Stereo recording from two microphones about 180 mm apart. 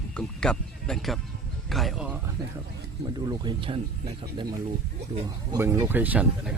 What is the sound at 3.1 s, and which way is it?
Speech, 25° right (ahead or behind).